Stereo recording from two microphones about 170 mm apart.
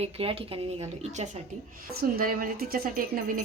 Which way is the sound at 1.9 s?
65° right (ahead or behind).